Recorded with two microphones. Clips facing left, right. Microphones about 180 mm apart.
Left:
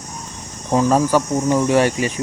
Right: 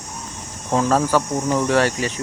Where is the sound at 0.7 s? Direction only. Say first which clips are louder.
Left 2 dB; 15° left (ahead or behind).